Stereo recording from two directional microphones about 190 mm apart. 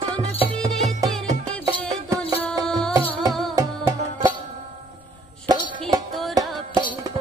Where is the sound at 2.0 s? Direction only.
15° right (ahead or behind).